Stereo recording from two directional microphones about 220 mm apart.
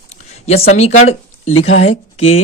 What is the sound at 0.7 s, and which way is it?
Speech, 30° left (ahead or behind).